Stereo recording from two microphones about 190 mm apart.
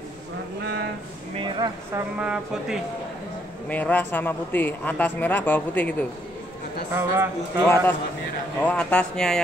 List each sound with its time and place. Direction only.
1.4 s a sound: 25° right (ahead or behind)
2.1 s speech: 5° right (ahead or behind)
3.6 s a man's voice: 10° left (ahead or behind)
6.9 s speech: 10° right (ahead or behind)
7.6 s a man's voice: 15° left (ahead or behind)